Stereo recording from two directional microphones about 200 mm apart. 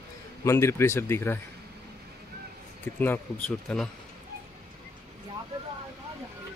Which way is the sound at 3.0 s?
5° left (ahead or behind).